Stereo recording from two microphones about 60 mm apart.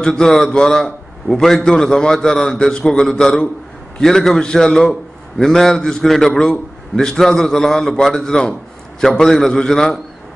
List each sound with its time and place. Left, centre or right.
0.0 s a man's voice: centre
6.4 s a man's voice: centre
7.1 s a man's voice: centre